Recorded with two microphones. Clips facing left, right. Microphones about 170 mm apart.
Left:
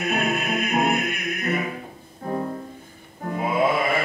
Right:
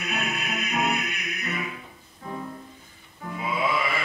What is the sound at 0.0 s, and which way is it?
Music, 50° left (ahead or behind).